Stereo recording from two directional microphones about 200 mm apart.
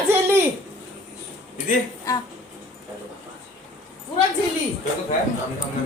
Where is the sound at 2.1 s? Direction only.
15° left (ahead or behind).